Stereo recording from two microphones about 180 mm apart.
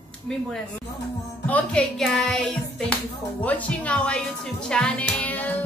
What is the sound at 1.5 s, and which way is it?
Hands, 5° left (ahead or behind).